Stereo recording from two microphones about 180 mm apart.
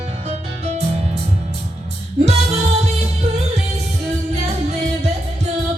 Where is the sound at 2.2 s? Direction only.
35° right (ahead or behind).